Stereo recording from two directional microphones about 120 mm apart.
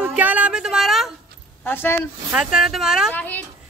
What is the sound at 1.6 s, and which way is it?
Speech, 20° left (ahead or behind).